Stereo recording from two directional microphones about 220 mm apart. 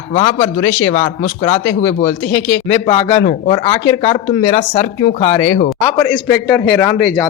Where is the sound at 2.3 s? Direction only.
55° left (ahead or behind).